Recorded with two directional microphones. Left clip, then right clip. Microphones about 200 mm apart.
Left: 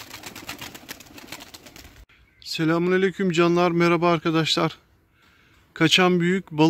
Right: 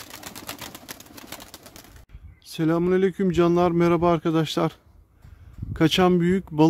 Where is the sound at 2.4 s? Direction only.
15° right (ahead or behind).